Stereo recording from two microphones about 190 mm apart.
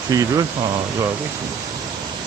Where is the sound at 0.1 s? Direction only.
20° right (ahead or behind).